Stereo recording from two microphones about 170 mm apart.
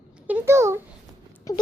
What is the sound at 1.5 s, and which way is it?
Speech, 20° left (ahead or behind).